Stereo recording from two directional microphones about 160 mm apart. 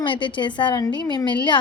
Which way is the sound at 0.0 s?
30° left (ahead or behind).